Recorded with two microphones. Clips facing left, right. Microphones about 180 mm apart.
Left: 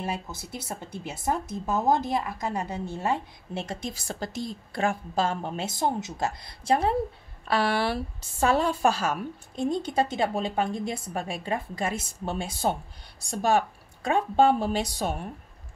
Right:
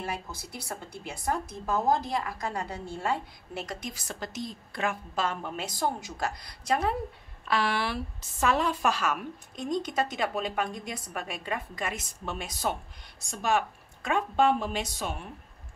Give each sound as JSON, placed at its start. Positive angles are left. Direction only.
{"t": 0.0, "sound": "a woman's voice", "side_deg": 20}